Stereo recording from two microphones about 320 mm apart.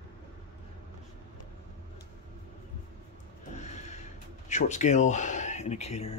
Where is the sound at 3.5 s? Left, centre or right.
Left.